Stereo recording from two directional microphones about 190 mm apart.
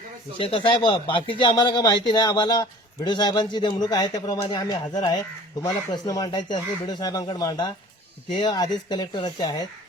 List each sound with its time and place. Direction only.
0.3 s speech: 25° left (ahead or behind)